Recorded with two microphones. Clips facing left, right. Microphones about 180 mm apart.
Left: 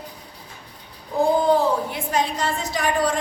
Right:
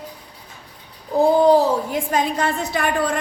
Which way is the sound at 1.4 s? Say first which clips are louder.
Right 4 dB; 40° right (ahead or behind).